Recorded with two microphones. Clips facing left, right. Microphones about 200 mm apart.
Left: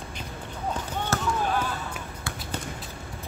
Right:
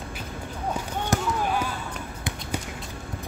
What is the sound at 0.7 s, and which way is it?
Basketball bounce, 10° right (ahead or behind).